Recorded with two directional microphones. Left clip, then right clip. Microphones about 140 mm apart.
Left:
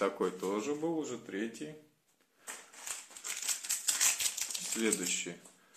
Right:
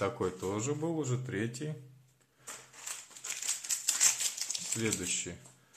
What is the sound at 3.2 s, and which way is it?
Crumpling, centre (ahead or behind).